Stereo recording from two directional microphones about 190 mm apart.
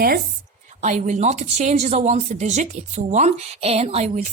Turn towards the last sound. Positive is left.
turn(degrees=-35)  # may be behind; listen again after turning